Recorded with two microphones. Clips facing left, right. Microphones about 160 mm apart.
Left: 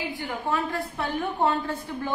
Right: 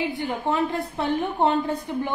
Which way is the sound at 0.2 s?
20° right (ahead or behind).